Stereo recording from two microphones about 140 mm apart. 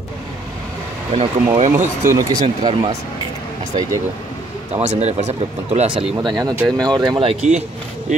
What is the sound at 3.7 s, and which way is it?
Speech, 30° right (ahead or behind).